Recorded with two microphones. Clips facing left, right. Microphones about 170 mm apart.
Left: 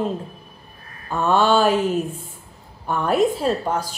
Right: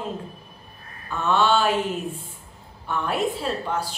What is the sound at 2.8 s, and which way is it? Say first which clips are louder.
A woman's voice: left 6 dB; 40° left (ahead or behind).